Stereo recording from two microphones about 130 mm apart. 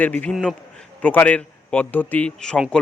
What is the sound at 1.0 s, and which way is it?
A man's voice, 15° left (ahead or behind).